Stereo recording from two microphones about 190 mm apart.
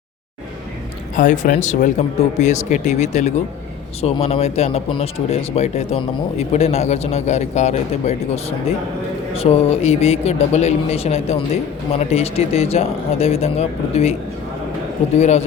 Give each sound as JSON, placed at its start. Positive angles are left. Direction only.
{"t": 1.1, "sound": "speech", "side_deg": 45}